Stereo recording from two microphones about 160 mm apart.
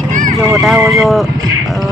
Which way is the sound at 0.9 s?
Centre (ahead or behind).